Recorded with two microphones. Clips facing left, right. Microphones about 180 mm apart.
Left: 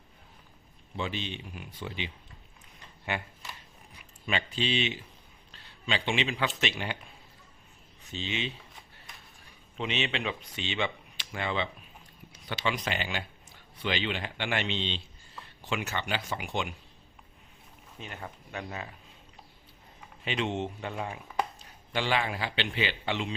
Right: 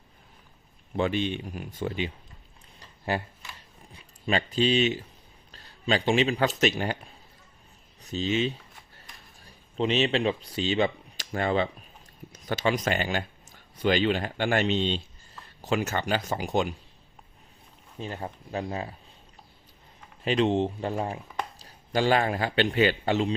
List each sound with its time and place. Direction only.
0.9 s speech: 50° right (ahead or behind)
3.1 s speech: 35° right (ahead or behind)
8.0 s speech: 40° right (ahead or behind)
17.9 s speech: 30° right (ahead or behind)
20.2 s a man's voice: 35° right (ahead or behind)